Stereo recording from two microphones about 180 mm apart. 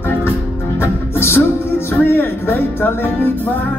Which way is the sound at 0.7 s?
15° left (ahead or behind).